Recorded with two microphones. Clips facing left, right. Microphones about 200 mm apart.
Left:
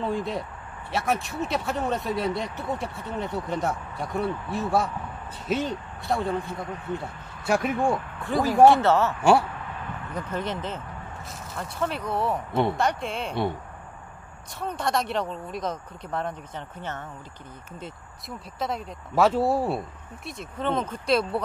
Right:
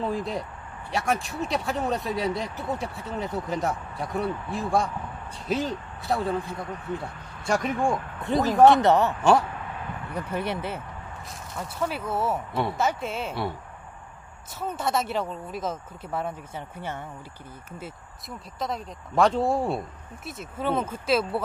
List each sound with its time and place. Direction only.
0.0 s speech: centre (ahead or behind)
8.2 s speech: 20° right (ahead or behind)
10.1 s speech: 10° right (ahead or behind)
14.6 s speech: 5° right (ahead or behind)
18.6 s speech: centre (ahead or behind)